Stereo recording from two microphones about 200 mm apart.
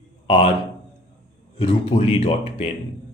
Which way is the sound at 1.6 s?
30° left (ahead or behind).